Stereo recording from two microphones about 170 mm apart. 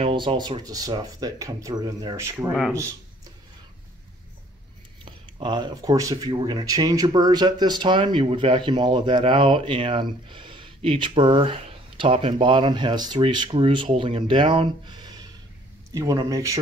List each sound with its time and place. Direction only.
0.0 s speech: 30° right (ahead or behind)
5.0 s speech: 25° right (ahead or behind)